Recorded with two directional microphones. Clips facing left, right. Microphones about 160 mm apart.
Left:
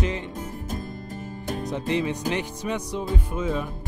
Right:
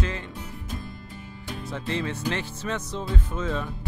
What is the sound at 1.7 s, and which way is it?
Music, 15° left (ahead or behind).